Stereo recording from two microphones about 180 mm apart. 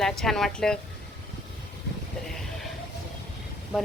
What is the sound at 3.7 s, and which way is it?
Speech, centre (ahead or behind).